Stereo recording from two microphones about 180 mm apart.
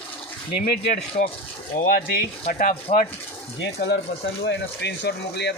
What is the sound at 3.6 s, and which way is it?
Speech, 70° left (ahead or behind).